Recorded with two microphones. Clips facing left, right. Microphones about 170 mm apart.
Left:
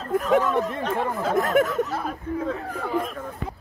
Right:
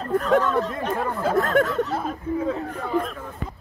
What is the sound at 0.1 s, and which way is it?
A man's voice, 10° left (ahead or behind).